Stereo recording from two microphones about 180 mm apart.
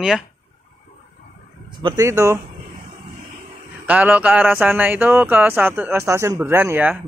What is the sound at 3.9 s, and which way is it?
Speech, 10° right (ahead or behind).